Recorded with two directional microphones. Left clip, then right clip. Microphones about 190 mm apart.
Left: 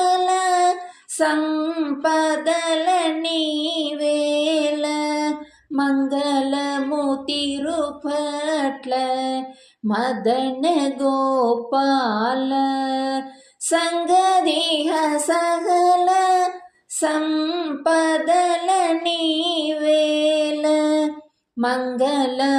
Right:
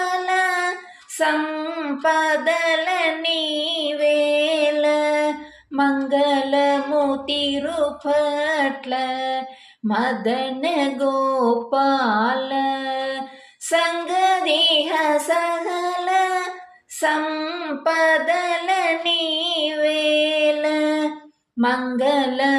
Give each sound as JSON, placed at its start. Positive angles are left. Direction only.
{"t": 0.0, "sound": "a sound", "side_deg": 40}
{"t": 1.2, "sound": "female singing", "side_deg": 45}
{"t": 5.8, "sound": "music", "side_deg": 45}
{"t": 7.3, "sound": "a sound", "side_deg": 45}
{"t": 10.2, "sound": "child singing", "side_deg": 45}
{"t": 11.0, "sound": "a sound", "side_deg": 20}
{"t": 11.4, "sound": "child singing", "side_deg": 40}
{"t": 12.7, "sound": "mantra", "side_deg": 45}
{"t": 13.7, "sound": "child singing", "side_deg": 40}
{"t": 15.7, "sound": "child singing", "side_deg": 20}
{"t": 17.0, "sound": "female singing", "side_deg": 40}
{"t": 21.6, "sound": "child singing", "side_deg": 45}